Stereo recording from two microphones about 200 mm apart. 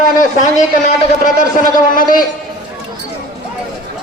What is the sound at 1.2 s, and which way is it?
A man's voice, 40° left (ahead or behind).